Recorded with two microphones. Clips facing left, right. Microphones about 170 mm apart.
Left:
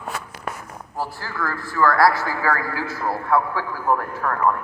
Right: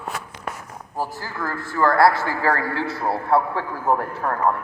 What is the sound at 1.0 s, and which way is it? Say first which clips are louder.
A man's voice: even; 20° right (ahead or behind).